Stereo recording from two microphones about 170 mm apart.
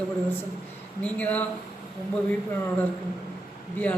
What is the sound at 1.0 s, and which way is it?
Speech, 10° left (ahead or behind).